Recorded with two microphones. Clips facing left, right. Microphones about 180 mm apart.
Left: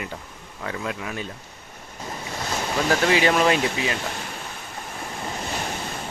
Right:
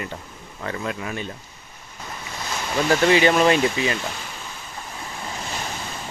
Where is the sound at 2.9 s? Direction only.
Centre (ahead or behind).